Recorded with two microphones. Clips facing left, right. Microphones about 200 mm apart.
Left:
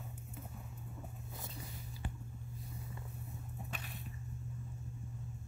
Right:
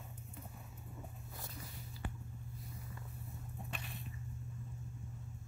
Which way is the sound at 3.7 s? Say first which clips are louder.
Even; centre (ahead or behind).